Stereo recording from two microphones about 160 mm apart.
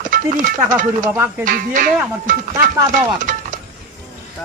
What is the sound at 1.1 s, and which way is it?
Speech, 15° right (ahead or behind).